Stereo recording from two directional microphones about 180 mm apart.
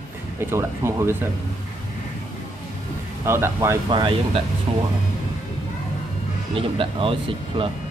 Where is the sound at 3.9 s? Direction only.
25° right (ahead or behind).